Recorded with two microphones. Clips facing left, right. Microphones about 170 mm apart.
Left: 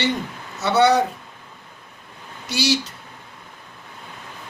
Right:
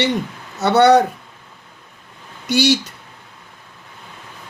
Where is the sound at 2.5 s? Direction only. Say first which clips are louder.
Right 6 dB; 60° right (ahead or behind).